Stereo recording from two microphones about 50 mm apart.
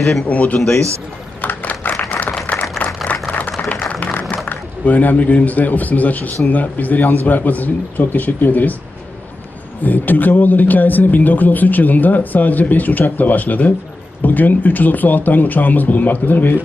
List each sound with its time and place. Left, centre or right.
0.3 s speech: left
1.4 s a sound: left
4.0 s applause: left
4.5 s a man's voice: left
9.8 s speech: left